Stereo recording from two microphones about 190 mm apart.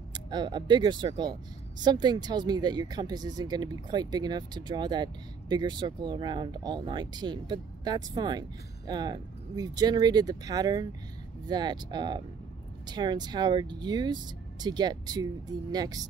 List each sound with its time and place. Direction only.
0.1 s speech: 25° right (ahead or behind)